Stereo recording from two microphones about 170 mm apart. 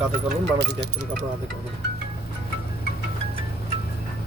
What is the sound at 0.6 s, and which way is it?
Speech, 65° right (ahead or behind).